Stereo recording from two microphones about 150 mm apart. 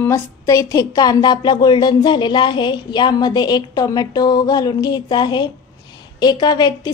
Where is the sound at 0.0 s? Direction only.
20° left (ahead or behind).